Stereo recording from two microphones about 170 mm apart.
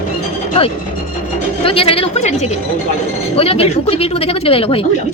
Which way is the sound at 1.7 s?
35° left (ahead or behind).